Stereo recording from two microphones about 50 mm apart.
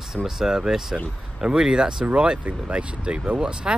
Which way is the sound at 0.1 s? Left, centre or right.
Centre.